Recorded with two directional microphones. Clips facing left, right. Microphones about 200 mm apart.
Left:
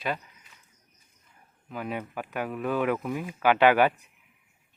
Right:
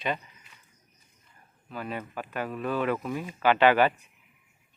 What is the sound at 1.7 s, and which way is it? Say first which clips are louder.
Speech: left 2 dB; 15° left (ahead or behind).